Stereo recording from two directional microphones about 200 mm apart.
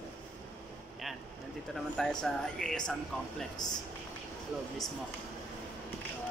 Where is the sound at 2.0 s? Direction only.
5° left (ahead or behind).